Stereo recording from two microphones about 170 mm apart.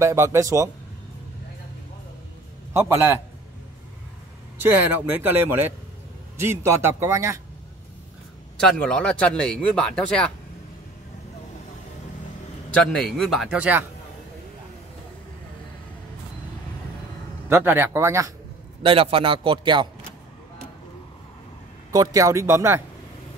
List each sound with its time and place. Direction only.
0.0 s speech: 15° right (ahead or behind)
2.7 s speech: 15° right (ahead or behind)
4.6 s speech: 10° right (ahead or behind)
8.5 s speech: 5° left (ahead or behind)
12.7 s speech: 5° left (ahead or behind)
17.5 s speech: 15° right (ahead or behind)
18.8 s a man's voice: 35° right (ahead or behind)
21.9 s speech: 20° right (ahead or behind)